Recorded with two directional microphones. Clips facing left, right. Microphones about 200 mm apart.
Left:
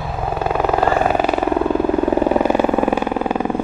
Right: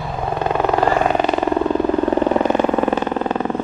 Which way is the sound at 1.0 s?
5° left (ahead or behind).